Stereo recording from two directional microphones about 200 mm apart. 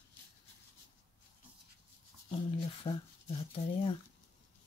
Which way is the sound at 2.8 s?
25° left (ahead or behind).